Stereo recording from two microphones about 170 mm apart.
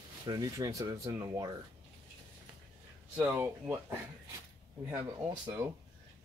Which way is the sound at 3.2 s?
15° right (ahead or behind).